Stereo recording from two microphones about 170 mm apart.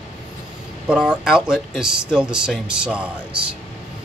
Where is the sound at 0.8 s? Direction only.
5° right (ahead or behind).